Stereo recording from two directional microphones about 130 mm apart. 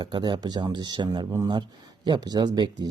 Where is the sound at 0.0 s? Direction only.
35° right (ahead or behind).